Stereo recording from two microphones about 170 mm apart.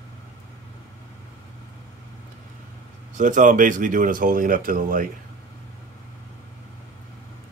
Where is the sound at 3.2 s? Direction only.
50° right (ahead or behind).